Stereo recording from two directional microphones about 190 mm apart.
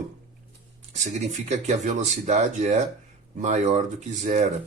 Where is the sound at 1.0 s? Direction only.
40° right (ahead or behind).